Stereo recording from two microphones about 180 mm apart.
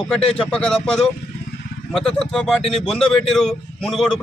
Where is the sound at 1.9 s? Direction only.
5° left (ahead or behind).